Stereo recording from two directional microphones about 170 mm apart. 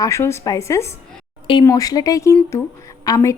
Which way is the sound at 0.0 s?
15° left (ahead or behind).